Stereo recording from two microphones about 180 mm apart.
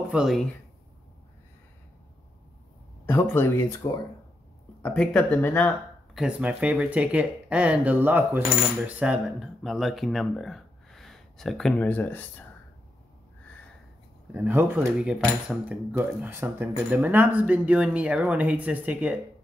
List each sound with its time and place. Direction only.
0.1 s speech: centre (ahead or behind)
3.1 s speech: 10° left (ahead or behind)
6.1 s speech: 5° right (ahead or behind); by 12.4 s 10° left (ahead or behind)
14.3 s speech: 10° right (ahead or behind)